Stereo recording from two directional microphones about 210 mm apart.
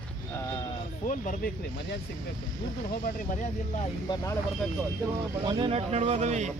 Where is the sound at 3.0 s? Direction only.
35° left (ahead or behind).